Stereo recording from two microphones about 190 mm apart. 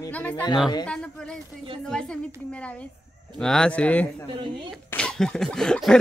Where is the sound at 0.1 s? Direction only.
10° left (ahead or behind).